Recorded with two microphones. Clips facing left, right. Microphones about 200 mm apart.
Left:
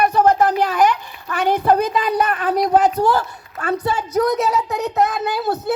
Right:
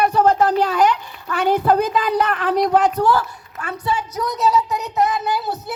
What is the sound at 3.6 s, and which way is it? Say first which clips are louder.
Speech: left 3 dB; 40° left (ahead or behind).